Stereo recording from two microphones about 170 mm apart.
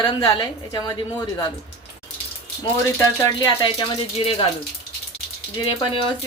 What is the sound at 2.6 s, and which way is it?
Speech, 25° left (ahead or behind).